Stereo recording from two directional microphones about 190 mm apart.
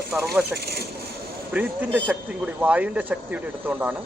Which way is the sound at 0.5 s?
55° right (ahead or behind).